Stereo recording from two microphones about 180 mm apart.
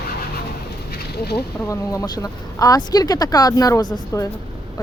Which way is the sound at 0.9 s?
60° left (ahead or behind).